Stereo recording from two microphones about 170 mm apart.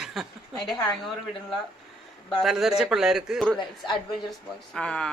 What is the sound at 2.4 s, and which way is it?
Speech, centre (ahead or behind).